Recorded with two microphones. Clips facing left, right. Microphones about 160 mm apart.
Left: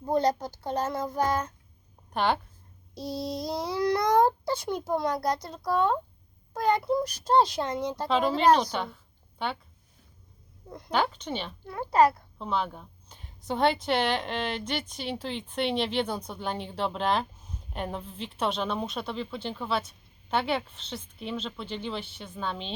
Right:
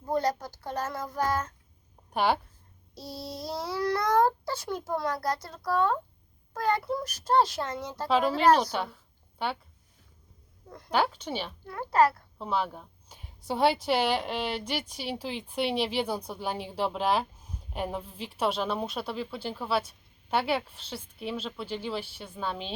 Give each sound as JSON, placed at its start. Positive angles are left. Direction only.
{"t": 0.0, "sound": "speech", "side_deg": 20}
{"t": 2.1, "sound": "a woman's voice", "side_deg": -10}
{"t": 2.9, "sound": "a child's voice", "side_deg": 15}
{"t": 8.0, "sound": "a woman's voice", "side_deg": -5}
{"t": 10.7, "sound": "a child's voice", "side_deg": 20}
{"t": 10.9, "sound": "a woman's voice", "side_deg": -10}
{"t": 11.6, "sound": "a child's voice", "side_deg": 20}
{"t": 12.4, "sound": "a woman's voice", "side_deg": -10}